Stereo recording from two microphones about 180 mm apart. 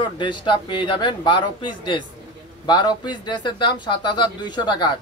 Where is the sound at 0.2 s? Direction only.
25° left (ahead or behind).